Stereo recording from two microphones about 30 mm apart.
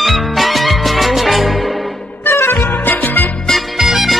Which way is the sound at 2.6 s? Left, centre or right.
Left.